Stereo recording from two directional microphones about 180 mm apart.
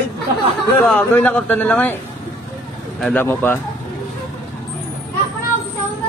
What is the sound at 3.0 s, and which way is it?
Speech, 10° left (ahead or behind).